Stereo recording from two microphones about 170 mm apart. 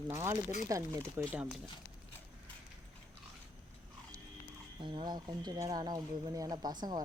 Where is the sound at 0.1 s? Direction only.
15° right (ahead or behind).